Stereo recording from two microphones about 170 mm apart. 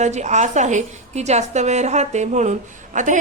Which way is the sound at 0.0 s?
45° right (ahead or behind).